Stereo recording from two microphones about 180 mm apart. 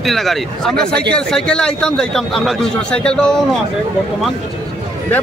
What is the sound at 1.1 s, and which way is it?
A man's voice, 5° left (ahead or behind).